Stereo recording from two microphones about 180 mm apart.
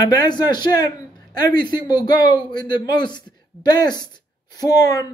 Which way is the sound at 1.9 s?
25° left (ahead or behind).